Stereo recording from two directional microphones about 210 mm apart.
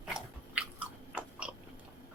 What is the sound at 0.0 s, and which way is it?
Biting, 5° right (ahead or behind).